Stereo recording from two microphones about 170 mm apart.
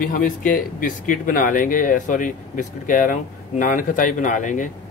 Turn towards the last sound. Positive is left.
turn(degrees=50)  # may be behind; listen again after turning